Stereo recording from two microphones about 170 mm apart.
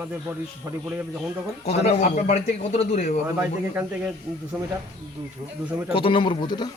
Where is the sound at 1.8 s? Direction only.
40° left (ahead or behind).